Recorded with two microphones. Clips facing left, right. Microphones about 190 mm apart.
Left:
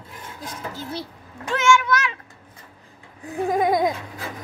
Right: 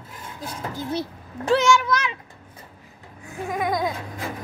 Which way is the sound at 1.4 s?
35° right (ahead or behind).